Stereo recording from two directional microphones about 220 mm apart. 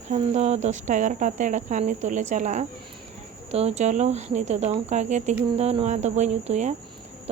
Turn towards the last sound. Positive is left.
turn(degrees=-30)  # may be behind; listen again after turning